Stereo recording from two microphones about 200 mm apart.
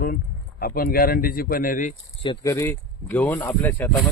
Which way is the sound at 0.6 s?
50° left (ahead or behind).